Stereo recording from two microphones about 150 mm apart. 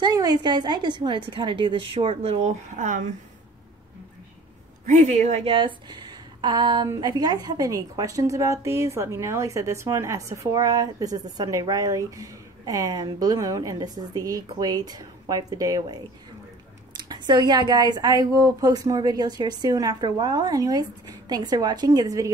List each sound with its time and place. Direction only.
0.0 s a woman's voice: 25° right (ahead or behind)
2.4 s speech: 55° right (ahead or behind)
4.8 s a woman's voice: 55° right (ahead or behind); by 22.3 s 25° right (ahead or behind)